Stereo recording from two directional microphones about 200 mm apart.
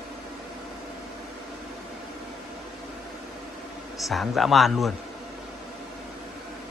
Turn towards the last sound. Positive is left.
turn(degrees=0)  # may be behind; listen again after turning